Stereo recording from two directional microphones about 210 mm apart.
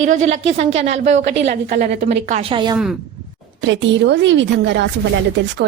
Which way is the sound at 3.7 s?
60° right (ahead or behind).